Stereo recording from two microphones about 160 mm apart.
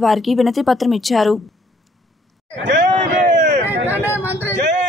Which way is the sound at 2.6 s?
90° right.